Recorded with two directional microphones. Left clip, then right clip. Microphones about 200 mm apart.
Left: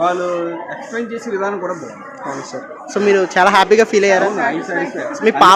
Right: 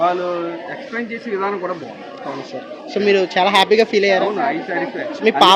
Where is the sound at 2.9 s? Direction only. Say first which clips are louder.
Left 2 dB; 15° left (ahead or behind).